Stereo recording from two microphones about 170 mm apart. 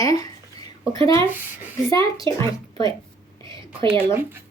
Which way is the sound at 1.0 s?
30° right (ahead or behind).